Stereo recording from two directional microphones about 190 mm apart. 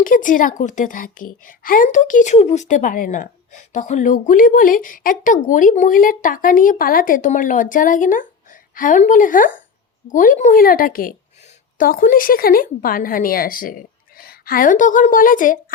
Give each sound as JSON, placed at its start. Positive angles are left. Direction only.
{"t": 0.0, "sound": "a woman's voice", "side_deg": 45}